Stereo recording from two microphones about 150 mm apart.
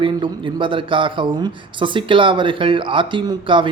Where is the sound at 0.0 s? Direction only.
35° right (ahead or behind).